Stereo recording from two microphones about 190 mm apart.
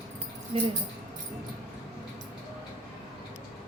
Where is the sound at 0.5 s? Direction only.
35° right (ahead or behind).